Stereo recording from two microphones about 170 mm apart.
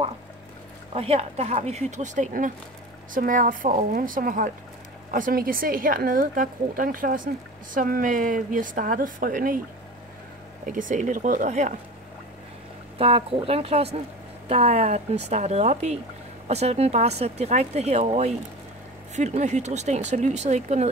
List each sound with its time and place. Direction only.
0.9 s a woman's voice: 35° right (ahead or behind); by 9.6 s 55° right (ahead or behind)
10.6 s a woman's voice: 50° right (ahead or behind)
12.9 s a woman's voice: 35° right (ahead or behind)